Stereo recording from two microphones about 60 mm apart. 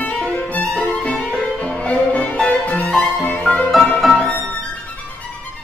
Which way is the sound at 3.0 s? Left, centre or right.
Left.